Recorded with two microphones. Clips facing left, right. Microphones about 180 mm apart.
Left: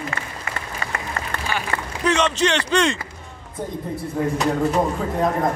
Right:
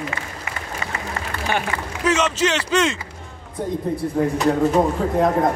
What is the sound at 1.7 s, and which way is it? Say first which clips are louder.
Speech: left 1 dB; 50° left (ahead or behind).